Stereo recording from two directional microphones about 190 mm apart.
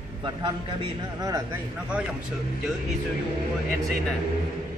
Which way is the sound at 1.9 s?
5° right (ahead or behind).